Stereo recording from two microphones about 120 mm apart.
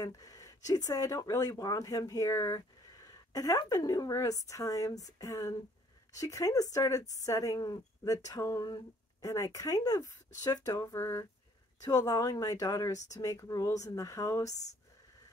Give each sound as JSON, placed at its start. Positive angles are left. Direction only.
{"t": 0.0, "sound": "speech", "side_deg": 30}